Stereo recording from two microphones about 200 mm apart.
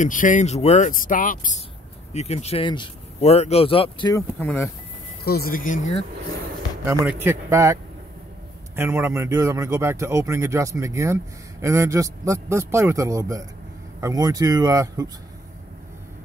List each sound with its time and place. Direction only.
0.0 s speech: 40° left (ahead or behind)
2.1 s speech: 30° left (ahead or behind)
4.1 s speech: 10° left (ahead or behind)
5.2 s speech: 50° left (ahead or behind)
6.8 s a man's voice: 15° right (ahead or behind)